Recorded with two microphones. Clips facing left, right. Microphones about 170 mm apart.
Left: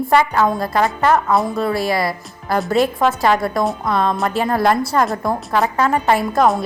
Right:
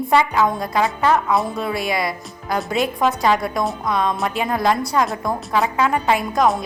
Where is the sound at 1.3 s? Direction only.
Centre (ahead or behind).